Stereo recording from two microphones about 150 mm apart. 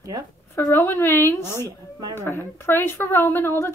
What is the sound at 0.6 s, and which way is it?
Speech, 20° left (ahead or behind).